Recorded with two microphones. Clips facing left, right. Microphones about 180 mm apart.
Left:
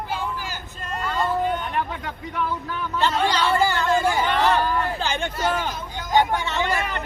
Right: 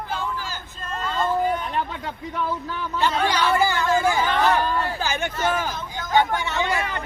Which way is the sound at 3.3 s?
10° right (ahead or behind).